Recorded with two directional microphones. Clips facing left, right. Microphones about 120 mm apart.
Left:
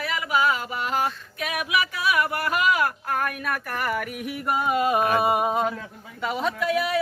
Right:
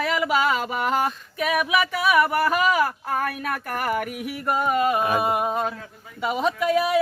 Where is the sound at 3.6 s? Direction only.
45° right (ahead or behind).